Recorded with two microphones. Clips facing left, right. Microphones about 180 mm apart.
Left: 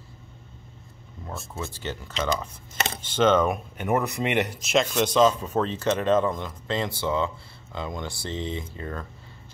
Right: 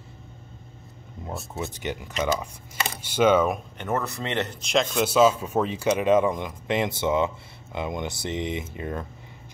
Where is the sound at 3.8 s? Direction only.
15° left (ahead or behind).